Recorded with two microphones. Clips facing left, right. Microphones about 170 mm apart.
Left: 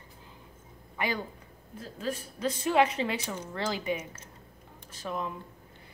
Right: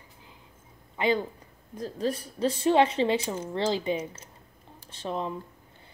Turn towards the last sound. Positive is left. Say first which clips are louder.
# right 3 dB
turn(degrees=-30)  # may be behind; listen again after turning